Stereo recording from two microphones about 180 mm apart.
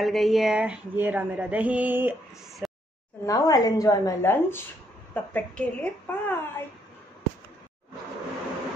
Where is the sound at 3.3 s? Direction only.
20° left (ahead or behind).